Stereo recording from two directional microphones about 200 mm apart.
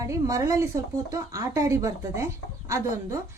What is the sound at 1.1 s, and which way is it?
A woman's voice, 15° right (ahead or behind).